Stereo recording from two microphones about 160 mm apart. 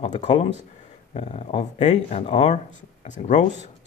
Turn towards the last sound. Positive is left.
turn(degrees=50)  # may be behind; listen again after turning